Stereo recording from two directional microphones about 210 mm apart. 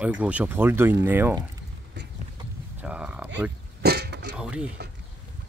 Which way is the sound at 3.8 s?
50° right (ahead or behind).